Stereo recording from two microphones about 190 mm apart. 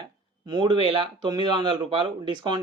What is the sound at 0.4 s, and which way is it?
Speech, 25° right (ahead or behind).